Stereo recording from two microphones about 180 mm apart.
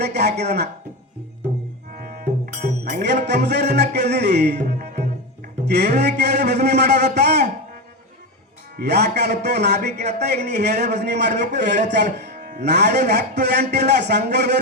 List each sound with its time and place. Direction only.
0.0 s music: 65° right (ahead or behind)
2.0 s music: 55° right (ahead or behind)
3.2 s music: 70° right (ahead or behind)
5.6 s speech: 70° right (ahead or behind)
6.0 s music: 70° right (ahead or behind)
8.7 s speech: 65° right (ahead or behind)
9.1 s music: 70° right (ahead or behind)
11.9 s a man's voice: 70° right (ahead or behind)
13.1 s music: 70° right (ahead or behind)